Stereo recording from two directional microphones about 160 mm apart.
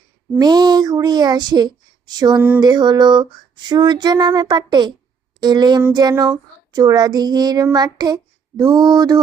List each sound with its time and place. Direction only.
0.3 s speech: 25° right (ahead or behind)
6.3 s child singing: 25° right (ahead or behind)